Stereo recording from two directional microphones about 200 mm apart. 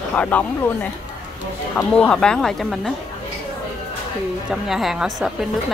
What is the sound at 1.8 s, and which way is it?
Speech, 5° left (ahead or behind).